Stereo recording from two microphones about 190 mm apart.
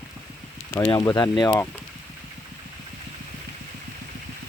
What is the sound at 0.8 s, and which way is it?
Speech, 20° left (ahead or behind).